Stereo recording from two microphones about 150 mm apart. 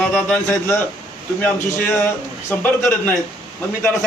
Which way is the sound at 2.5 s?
15° left (ahead or behind).